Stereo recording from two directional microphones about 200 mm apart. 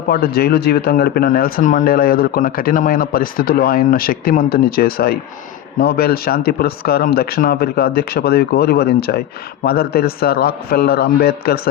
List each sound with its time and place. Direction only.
0.1 s speech: 50° left (ahead or behind)